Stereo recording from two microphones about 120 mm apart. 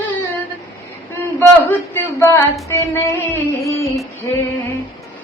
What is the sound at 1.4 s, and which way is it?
Female singing, 15° left (ahead or behind).